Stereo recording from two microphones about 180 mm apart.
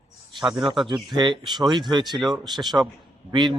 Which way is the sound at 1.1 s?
25° right (ahead or behind).